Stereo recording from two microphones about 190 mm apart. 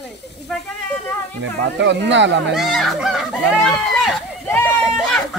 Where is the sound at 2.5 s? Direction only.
Centre (ahead or behind).